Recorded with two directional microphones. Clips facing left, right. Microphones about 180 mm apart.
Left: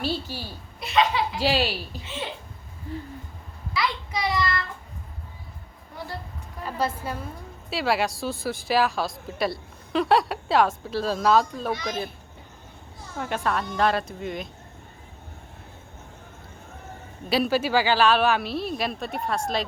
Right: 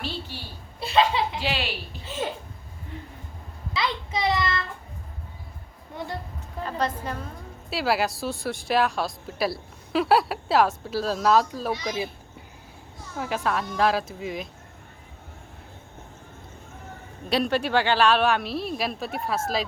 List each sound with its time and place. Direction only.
0.3 s a woman's voice: 40° left (ahead or behind)
0.8 s laughter: 30° right (ahead or behind)
1.4 s a woman's voice: 40° left (ahead or behind)
2.0 s speech: 40° right (ahead or behind)
2.9 s hoot: 35° left (ahead or behind)
3.8 s child singing: 25° right (ahead or behind)
6.7 s a woman's voice: 10° left (ahead or behind)
13.1 s speech: centre (ahead or behind)
17.2 s speech: centre (ahead or behind)